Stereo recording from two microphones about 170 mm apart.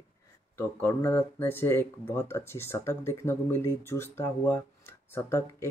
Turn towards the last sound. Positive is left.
turn(degrees=15)  # may be behind; listen again after turning